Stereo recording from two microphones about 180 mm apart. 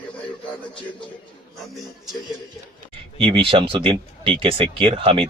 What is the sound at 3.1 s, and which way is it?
Speech, 30° right (ahead or behind).